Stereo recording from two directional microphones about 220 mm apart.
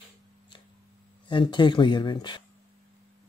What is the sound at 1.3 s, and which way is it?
Speech, 20° left (ahead or behind).